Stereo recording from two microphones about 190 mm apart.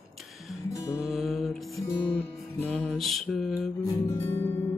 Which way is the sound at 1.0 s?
Centre (ahead or behind).